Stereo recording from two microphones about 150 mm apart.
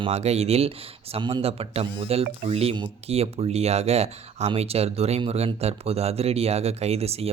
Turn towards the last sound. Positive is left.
turn(degrees=-45)  # may be behind; listen again after turning